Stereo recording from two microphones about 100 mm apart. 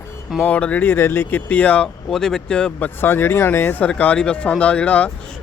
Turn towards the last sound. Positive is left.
turn(degrees=15)  # may be behind; listen again after turning